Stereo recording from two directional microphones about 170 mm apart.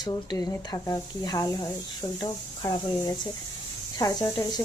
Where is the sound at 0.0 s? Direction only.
25° left (ahead or behind).